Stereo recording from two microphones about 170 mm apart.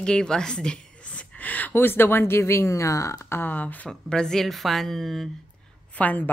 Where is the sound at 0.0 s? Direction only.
5° left (ahead or behind).